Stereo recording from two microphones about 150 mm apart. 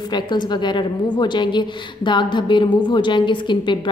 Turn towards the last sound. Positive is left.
turn(degrees=30)  # may be behind; listen again after turning